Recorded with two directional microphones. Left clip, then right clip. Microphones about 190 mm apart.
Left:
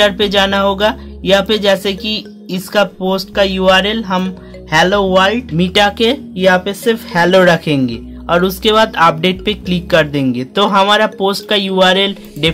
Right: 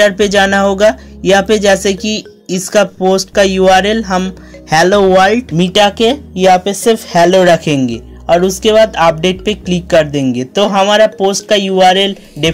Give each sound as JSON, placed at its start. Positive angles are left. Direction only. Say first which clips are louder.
{"t": 0.0, "sound": "speech", "louder": "right 2 dB", "side_deg": -15}
{"t": 5.6, "sound": "speech", "louder": "right 2 dB", "side_deg": -10}